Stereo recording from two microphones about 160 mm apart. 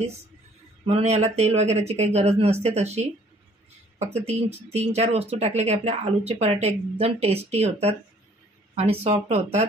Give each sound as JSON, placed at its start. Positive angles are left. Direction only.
{"t": 0.8, "sound": "speech", "side_deg": -40}
{"t": 4.3, "sound": "speech", "side_deg": -40}